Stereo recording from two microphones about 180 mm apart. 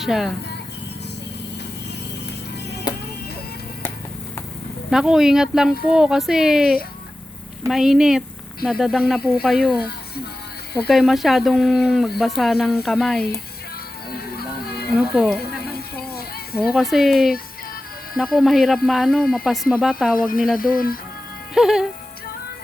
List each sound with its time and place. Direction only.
0.0 s speech: centre (ahead or behind)
2.9 s music: 25° left (ahead or behind)
4.9 s speech: 5° right (ahead or behind)
10.8 s speech: centre (ahead or behind)
14.1 s music: 55° left (ahead or behind)
14.9 s speech: 5° right (ahead or behind)
16.7 s speech: centre (ahead or behind)
20.1 s speech: 50° left (ahead or behind)
21.5 s speech: centre (ahead or behind)